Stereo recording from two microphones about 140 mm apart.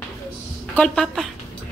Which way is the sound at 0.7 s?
5° left (ahead or behind).